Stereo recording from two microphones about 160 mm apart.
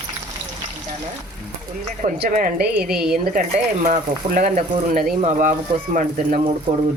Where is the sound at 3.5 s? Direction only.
50° right (ahead or behind).